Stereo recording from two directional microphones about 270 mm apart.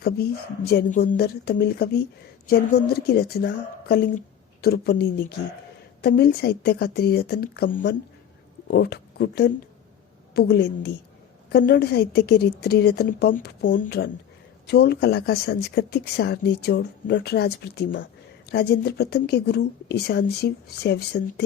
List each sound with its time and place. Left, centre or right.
0.0 s speech: left